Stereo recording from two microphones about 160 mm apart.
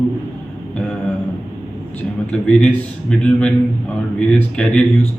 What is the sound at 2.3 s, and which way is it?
Speech, 5° left (ahead or behind).